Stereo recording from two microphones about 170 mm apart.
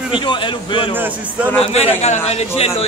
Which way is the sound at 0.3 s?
30° left (ahead or behind).